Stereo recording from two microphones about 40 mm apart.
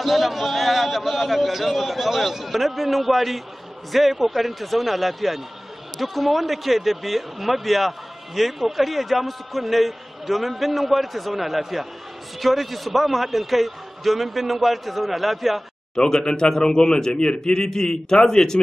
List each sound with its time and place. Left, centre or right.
0.0 s a man's voice: centre
16.0 s a man's voice: centre